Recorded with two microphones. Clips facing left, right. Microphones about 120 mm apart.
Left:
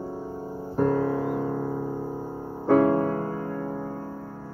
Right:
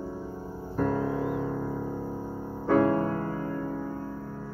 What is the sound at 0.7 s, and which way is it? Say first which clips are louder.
Music: left 4 dB; 40° left (ahead or behind).